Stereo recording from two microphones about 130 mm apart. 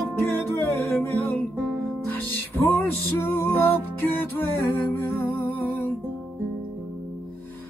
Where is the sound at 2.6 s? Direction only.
15° left (ahead or behind).